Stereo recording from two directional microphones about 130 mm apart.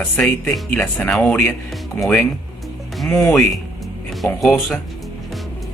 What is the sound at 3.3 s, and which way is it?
Speech, centre (ahead or behind).